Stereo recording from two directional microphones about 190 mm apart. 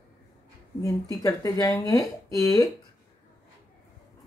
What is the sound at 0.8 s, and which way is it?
Speech, 15° left (ahead or behind).